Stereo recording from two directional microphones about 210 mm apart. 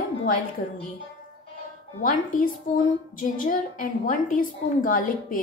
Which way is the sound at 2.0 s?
40° left (ahead or behind).